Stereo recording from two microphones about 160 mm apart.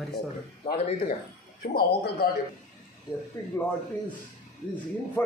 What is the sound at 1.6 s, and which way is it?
Speech, 75° left (ahead or behind).